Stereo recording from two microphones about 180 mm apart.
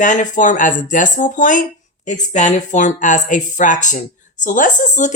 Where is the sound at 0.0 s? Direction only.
45° left (ahead or behind).